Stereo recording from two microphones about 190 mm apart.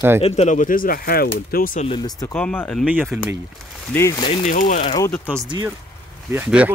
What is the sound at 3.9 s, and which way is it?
Speech, 10° left (ahead or behind).